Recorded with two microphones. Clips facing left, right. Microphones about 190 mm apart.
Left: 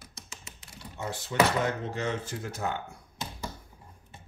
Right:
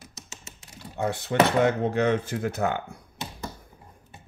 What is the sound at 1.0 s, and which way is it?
Speech, 60° right (ahead or behind).